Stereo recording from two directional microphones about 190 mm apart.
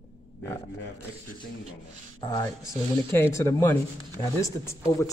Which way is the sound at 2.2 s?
20° left (ahead or behind).